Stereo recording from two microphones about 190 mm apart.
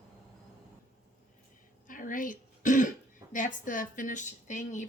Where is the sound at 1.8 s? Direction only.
45° left (ahead or behind).